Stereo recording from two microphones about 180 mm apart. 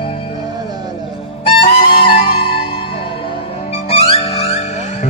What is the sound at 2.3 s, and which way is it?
Music, 30° left (ahead or behind).